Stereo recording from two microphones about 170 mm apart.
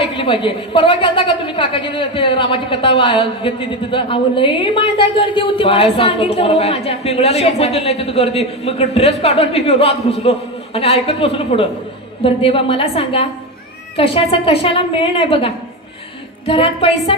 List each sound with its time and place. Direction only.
0.0 s a woman's voice: 30° left (ahead or behind)